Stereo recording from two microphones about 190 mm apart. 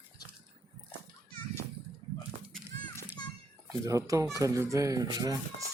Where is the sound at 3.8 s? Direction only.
15° right (ahead or behind).